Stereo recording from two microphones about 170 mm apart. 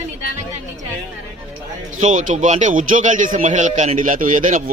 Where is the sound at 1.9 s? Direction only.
45° right (ahead or behind).